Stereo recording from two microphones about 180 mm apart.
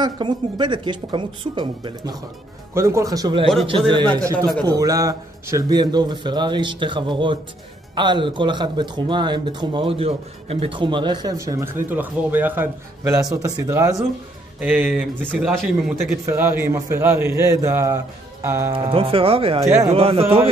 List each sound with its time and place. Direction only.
0.0 s speech: 25° right (ahead or behind)
4.1 s a man's voice: 15° right (ahead or behind)
14.6 s speech: 5° right (ahead or behind)
16.3 s a man's voice: 10° right (ahead or behind)
18.7 s speech: 30° right (ahead or behind)
19.6 s a man's voice: 15° right (ahead or behind)
19.9 s speech: 30° right (ahead or behind)